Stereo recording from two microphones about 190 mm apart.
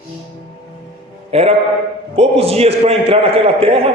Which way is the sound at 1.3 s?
30° right (ahead or behind).